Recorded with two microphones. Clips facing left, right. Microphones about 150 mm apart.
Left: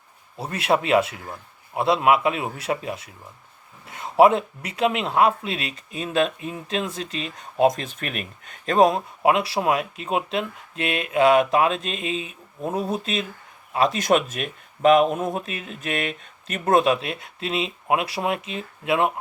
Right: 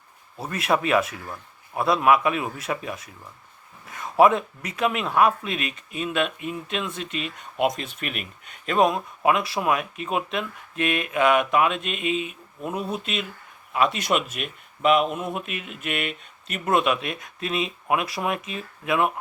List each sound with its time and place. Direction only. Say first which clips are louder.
0.3 s a man's voice: left 2 dB; 30° left (ahead or behind)